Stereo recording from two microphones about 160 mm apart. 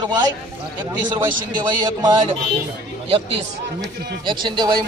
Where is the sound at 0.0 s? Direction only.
25° right (ahead or behind).